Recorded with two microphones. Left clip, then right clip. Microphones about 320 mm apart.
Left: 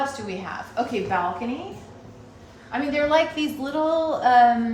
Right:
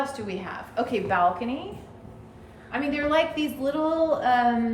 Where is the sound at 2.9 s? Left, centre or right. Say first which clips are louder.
Left 3 dB; centre.